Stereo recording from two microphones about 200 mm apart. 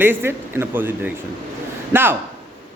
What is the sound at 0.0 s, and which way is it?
Speech, 10° right (ahead or behind).